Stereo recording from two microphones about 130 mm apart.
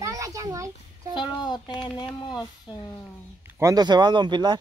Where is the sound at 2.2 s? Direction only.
35° left (ahead or behind).